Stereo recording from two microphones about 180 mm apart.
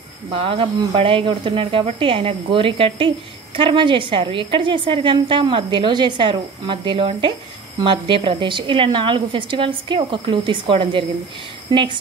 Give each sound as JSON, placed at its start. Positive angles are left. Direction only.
{"t": 0.3, "sound": "a woman's voice", "side_deg": -30}